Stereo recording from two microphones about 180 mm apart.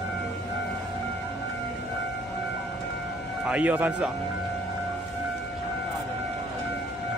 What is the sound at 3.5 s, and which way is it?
Speech, 10° right (ahead or behind).